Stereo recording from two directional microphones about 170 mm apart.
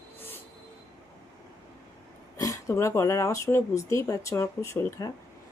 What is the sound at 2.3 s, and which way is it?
A woman's voice, 20° left (ahead or behind).